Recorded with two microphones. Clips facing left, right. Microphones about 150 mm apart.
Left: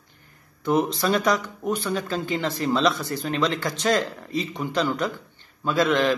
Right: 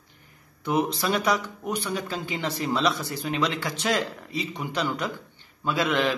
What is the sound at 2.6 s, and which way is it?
Speech, 10° right (ahead or behind).